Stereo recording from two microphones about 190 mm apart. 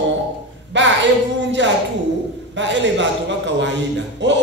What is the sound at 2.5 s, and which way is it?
A man's voice, 70° right (ahead or behind).